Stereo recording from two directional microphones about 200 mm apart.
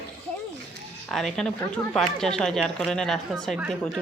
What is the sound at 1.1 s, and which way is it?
Speech, centre (ahead or behind).